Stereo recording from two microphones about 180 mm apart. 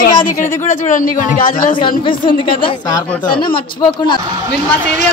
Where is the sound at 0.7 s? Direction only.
45° left (ahead or behind).